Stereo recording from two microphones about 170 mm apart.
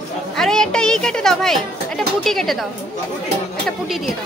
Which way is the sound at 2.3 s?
Centre (ahead or behind).